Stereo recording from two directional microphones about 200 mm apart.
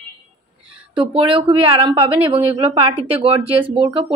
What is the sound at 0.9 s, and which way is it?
Speech, 25° right (ahead or behind).